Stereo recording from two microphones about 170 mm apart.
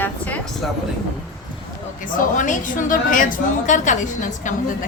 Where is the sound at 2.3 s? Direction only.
50° left (ahead or behind).